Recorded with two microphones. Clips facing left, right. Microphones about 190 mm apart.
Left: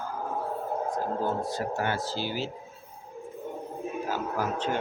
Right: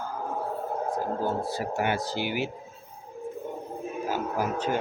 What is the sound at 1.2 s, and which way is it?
Speech, 10° right (ahead or behind).